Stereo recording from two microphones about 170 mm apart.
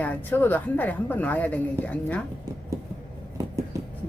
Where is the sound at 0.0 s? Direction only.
10° left (ahead or behind).